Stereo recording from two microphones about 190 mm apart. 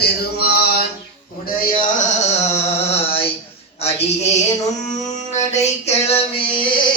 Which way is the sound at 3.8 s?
35° left (ahead or behind).